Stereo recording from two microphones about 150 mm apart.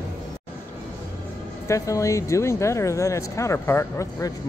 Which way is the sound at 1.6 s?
20° left (ahead or behind).